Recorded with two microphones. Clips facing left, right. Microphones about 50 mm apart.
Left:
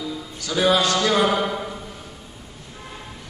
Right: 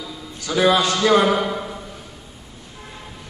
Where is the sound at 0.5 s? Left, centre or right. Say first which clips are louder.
Right 2 dB; right.